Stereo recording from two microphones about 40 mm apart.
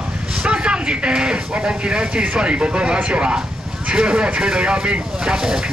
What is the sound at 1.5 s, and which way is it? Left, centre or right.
Speech, right.